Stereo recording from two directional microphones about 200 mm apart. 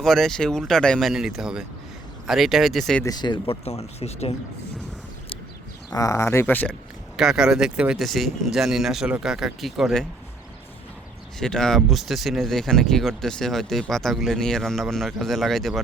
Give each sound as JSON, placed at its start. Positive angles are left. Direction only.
{"t": 0.0, "sound": "speech", "side_deg": 0}
{"t": 3.0, "sound": "speech", "side_deg": 20}
{"t": 5.9, "sound": "speech", "side_deg": 15}
{"t": 7.2, "sound": "speech", "side_deg": 0}
{"t": 11.3, "sound": "speech", "side_deg": 5}